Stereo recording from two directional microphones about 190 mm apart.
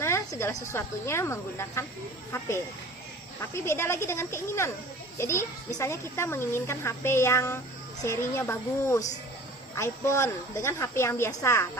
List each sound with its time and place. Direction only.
0.0 s a sound: 15° left (ahead or behind)
0.7 s a child's voice: 15° left (ahead or behind)
3.5 s a child's voice: 15° left (ahead or behind)